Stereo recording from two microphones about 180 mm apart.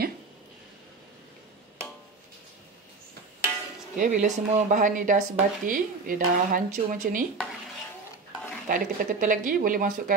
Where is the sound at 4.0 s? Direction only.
45° right (ahead or behind).